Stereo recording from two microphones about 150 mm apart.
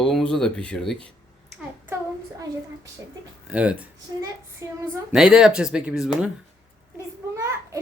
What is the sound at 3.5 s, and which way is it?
Speech, 10° right (ahead or behind).